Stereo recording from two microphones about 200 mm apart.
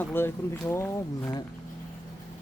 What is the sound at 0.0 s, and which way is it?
Speech, 10° left (ahead or behind).